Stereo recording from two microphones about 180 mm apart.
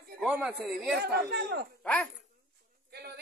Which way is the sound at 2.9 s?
60° right (ahead or behind).